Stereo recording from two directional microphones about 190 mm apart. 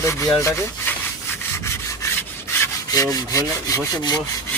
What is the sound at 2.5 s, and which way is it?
Wood, 20° left (ahead or behind).